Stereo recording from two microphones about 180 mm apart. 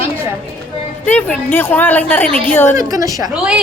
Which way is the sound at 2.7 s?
20° right (ahead or behind).